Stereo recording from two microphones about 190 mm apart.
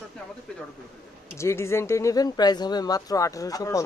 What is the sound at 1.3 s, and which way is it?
Speech, 15° left (ahead or behind).